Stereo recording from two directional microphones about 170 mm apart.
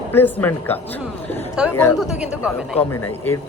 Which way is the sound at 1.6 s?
5° right (ahead or behind).